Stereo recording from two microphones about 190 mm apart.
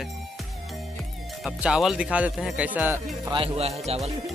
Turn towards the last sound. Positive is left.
turn(degrees=-35)  # may be behind; listen again after turning